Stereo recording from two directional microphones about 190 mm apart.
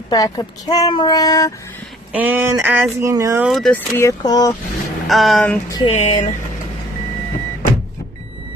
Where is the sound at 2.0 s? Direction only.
10° right (ahead or behind).